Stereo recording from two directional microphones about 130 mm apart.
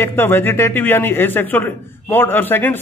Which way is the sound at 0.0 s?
15° left (ahead or behind).